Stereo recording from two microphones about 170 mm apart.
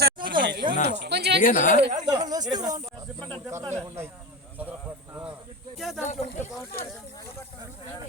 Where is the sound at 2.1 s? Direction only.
25° right (ahead or behind).